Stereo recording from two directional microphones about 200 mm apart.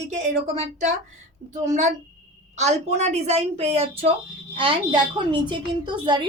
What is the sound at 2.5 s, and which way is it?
A woman's voice, 35° right (ahead or behind).